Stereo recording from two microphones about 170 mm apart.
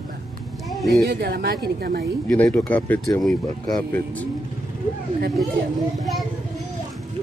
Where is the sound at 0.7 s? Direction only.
Centre (ahead or behind).